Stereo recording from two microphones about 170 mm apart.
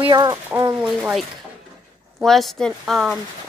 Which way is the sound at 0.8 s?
5° right (ahead or behind).